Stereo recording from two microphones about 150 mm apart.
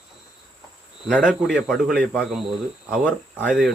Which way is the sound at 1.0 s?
5° right (ahead or behind).